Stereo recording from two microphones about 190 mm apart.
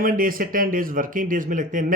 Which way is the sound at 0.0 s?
50° right (ahead or behind).